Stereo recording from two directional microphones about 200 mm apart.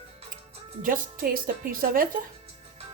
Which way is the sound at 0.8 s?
45° right (ahead or behind).